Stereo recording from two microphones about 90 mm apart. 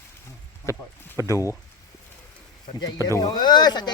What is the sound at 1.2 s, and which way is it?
Speech, 40° left (ahead or behind).